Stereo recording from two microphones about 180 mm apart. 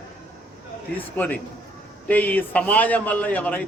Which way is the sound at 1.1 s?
10° left (ahead or behind).